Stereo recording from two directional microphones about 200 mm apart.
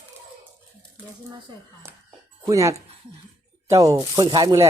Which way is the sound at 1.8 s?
15° right (ahead or behind).